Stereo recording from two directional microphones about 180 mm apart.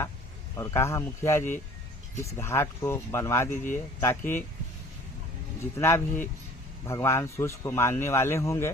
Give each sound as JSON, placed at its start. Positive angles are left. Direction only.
{"t": 0.5, "sound": "a man's voice", "side_deg": 15}
{"t": 5.7, "sound": "a man's voice", "side_deg": 15}